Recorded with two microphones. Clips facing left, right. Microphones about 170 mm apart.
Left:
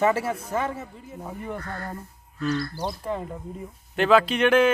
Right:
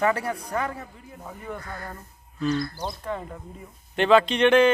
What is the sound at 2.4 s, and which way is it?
A man's voice, 5° left (ahead or behind).